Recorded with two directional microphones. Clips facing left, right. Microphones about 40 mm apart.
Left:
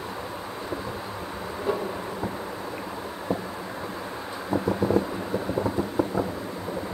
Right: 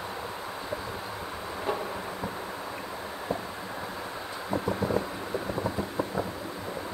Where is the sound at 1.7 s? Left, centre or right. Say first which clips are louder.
Left 4 dB; centre.